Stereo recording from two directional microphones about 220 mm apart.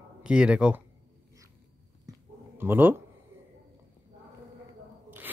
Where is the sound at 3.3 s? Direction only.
10° right (ahead or behind).